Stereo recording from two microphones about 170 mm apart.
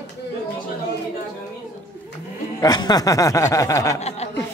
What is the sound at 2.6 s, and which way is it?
Speech, 25° left (ahead or behind).